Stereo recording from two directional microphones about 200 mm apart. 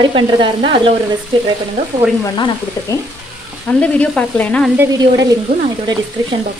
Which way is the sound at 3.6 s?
5° left (ahead or behind).